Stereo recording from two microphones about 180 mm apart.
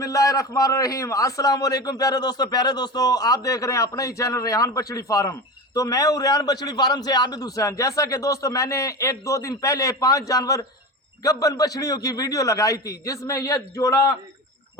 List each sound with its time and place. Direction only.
0.0 s a man's voice: 20° left (ahead or behind)